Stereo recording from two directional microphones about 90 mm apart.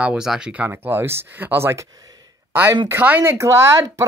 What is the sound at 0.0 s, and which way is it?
A woman's voice, 10° right (ahead or behind).